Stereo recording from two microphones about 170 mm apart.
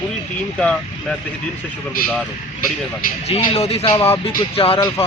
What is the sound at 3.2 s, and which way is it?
Speech, 35° left (ahead or behind).